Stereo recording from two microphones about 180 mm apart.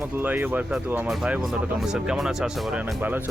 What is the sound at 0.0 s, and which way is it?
Speech, 10° right (ahead or behind).